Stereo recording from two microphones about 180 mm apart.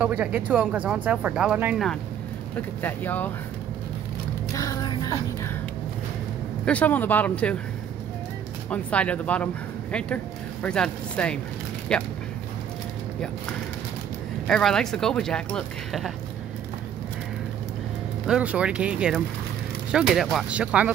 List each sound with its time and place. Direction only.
0.0 s speech: 5° right (ahead or behind)
2.8 s speech: 10° left (ahead or behind)
4.6 s music: 20° left (ahead or behind)
6.6 s speech: 10° left (ahead or behind)
8.6 s speech: 5° left (ahead or behind)
14.5 s speech: 5° left (ahead or behind)
18.2 s speech: 5° right (ahead or behind)